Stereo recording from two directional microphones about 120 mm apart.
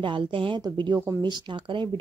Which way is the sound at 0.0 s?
45° right (ahead or behind).